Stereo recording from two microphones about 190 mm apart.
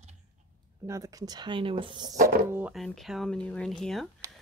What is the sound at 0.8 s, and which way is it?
Speech, 15° right (ahead or behind).